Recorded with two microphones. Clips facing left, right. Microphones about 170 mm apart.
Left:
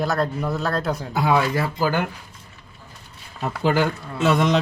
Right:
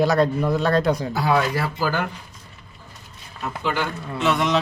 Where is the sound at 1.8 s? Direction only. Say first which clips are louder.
Left 2 dB; 15° left (ahead or behind).